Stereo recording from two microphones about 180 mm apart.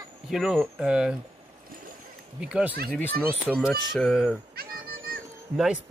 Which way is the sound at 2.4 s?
5° right (ahead or behind).